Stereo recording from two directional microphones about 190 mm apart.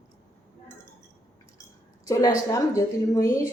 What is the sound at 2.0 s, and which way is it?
A woman's voice, 15° left (ahead or behind).